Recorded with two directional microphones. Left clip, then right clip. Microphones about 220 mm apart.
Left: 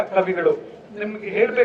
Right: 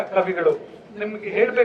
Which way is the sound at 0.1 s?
20° right (ahead or behind).